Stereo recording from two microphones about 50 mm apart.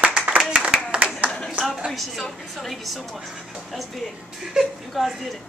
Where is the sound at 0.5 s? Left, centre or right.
Centre.